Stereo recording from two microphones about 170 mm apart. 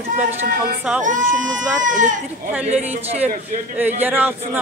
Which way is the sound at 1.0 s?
50° right (ahead or behind).